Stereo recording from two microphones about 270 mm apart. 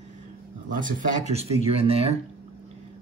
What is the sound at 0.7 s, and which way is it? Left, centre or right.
Speech, right.